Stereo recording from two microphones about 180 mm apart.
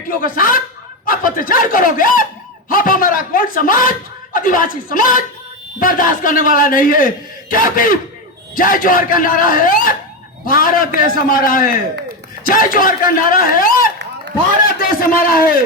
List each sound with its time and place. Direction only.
0.1 s speech: 50° left (ahead or behind)